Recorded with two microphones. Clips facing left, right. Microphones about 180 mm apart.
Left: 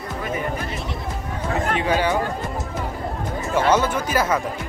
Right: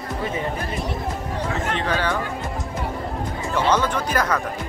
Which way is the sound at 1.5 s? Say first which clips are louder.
Left 5 dB; 35° left (ahead or behind).